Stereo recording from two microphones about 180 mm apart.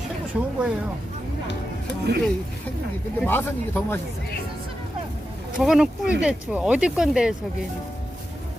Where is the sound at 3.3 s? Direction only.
10° left (ahead or behind).